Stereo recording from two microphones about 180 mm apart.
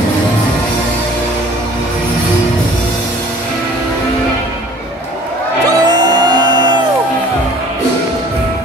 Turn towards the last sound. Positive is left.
turn(degrees=-25)  # may be behind; listen again after turning